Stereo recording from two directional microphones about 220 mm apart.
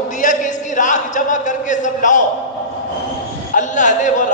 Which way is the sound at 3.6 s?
35° left (ahead or behind).